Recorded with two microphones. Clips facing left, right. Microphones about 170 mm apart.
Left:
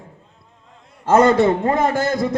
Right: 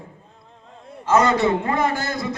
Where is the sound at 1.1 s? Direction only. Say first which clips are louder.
Left 4 dB; 55° left (ahead or behind).